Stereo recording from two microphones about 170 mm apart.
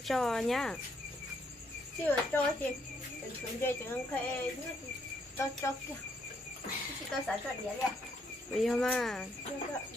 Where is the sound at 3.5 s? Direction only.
15° left (ahead or behind).